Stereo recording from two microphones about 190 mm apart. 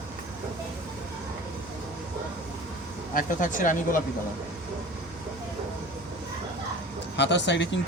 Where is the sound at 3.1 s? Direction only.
45° left (ahead or behind).